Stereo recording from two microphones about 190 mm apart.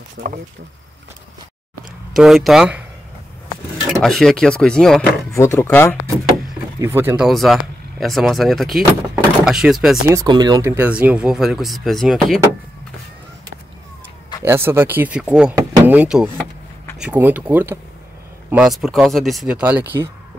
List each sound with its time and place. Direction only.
0.2 s speech: 65° right (ahead or behind)
2.1 s speech: centre (ahead or behind)
4.0 s speech: centre (ahead or behind)
5.3 s speech: 15° left (ahead or behind)
6.8 s speech: 15° right (ahead or behind)
7.2 s speech: centre (ahead or behind)
10.0 s speech: 20° right (ahead or behind); by 12.4 s centre (ahead or behind)
14.4 s speech: 10° right (ahead or behind)